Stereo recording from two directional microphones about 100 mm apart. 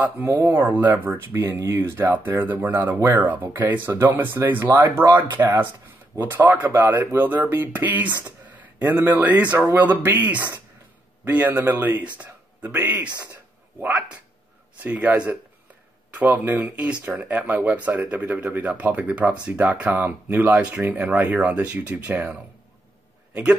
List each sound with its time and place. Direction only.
0.0 s speech: 20° right (ahead or behind)
13.3 s a sound: 20° right (ahead or behind)
14.8 s speech: 15° right (ahead or behind)